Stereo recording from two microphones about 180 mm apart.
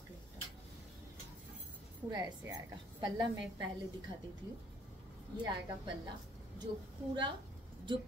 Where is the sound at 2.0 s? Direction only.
25° right (ahead or behind).